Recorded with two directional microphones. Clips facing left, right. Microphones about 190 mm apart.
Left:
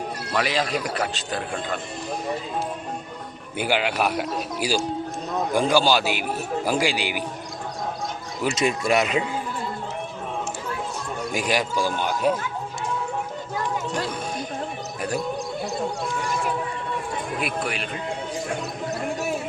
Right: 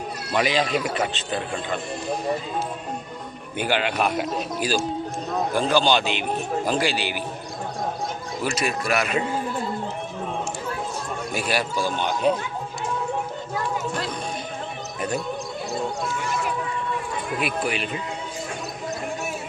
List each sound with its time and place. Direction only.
0.3 s a man's voice: centre (ahead or behind)
3.6 s speech: 10° left (ahead or behind)
8.4 s speech: 20° left (ahead or behind)
11.3 s speech: 15° left (ahead or behind)
17.4 s a man's voice: centre (ahead or behind)